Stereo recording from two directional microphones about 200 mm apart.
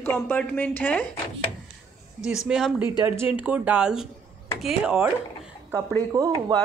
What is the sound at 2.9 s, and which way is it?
A woman's voice, 15° right (ahead or behind).